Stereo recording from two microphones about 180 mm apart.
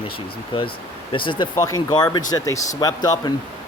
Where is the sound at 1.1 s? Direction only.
25° left (ahead or behind).